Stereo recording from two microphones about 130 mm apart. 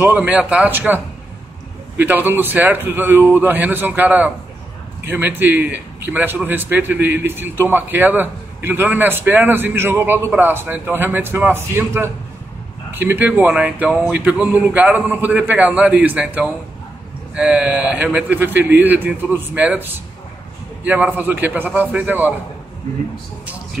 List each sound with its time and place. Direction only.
0.0 s a man's voice: 15° right (ahead or behind)